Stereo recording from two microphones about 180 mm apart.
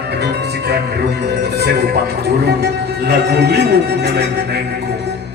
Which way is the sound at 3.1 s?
65° right (ahead or behind).